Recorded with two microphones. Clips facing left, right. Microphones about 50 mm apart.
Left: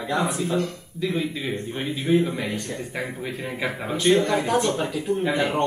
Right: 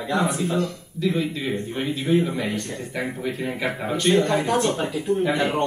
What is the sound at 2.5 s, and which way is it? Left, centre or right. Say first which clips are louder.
Speech: right 1 dB; centre.